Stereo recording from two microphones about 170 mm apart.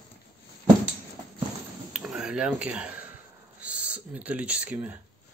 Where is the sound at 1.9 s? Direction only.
5° right (ahead or behind).